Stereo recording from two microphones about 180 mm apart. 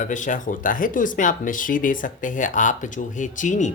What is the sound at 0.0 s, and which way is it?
Speech, 45° left (ahead or behind).